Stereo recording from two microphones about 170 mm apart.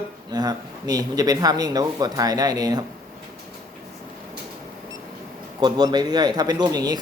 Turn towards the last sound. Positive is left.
turn(degrees=-20)  # may be behind; listen again after turning